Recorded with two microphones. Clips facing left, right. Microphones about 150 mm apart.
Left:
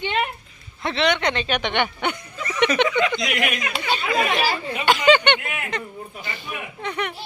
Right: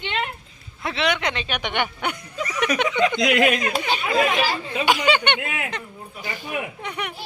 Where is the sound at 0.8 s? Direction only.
5° right (ahead or behind).